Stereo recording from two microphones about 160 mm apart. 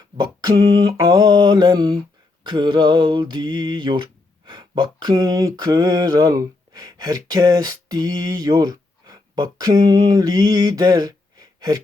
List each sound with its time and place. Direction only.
0.2 s mantra: 25° right (ahead or behind)